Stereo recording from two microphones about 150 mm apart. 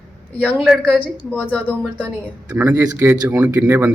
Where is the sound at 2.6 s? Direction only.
15° right (ahead or behind).